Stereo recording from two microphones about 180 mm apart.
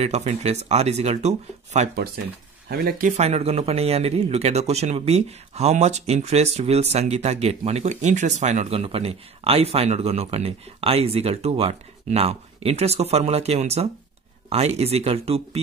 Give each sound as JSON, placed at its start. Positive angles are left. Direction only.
{"t": 0.0, "sound": "speech", "side_deg": -40}
{"t": 2.7, "sound": "speech", "side_deg": -55}